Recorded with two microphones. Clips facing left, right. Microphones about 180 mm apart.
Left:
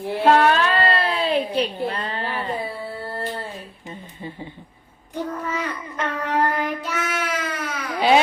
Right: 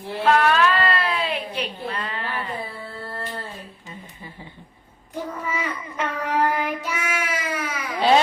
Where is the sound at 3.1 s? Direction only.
30° left (ahead or behind).